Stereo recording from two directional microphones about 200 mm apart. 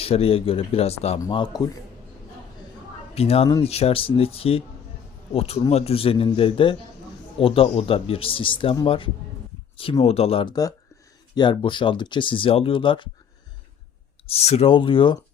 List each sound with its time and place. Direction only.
0.0 s a man's voice: 30° left (ahead or behind)
3.2 s a man's voice: 30° left (ahead or behind)
14.3 s a man's voice: 30° left (ahead or behind)